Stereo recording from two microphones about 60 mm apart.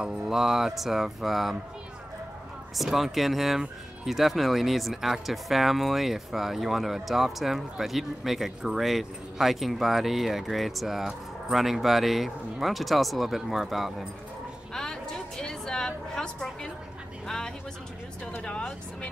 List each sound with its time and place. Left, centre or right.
0.0 s speech: centre
2.7 s speech: centre
14.7 s music: centre
18.4 s speech: centre